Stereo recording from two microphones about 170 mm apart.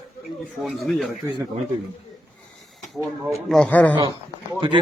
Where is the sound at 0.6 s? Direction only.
Centre (ahead or behind).